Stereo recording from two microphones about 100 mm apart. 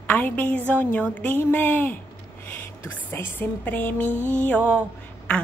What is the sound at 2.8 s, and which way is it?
A woman's voice, 20° left (ahead or behind).